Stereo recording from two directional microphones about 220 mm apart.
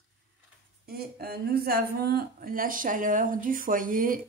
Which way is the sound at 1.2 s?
45° right (ahead or behind).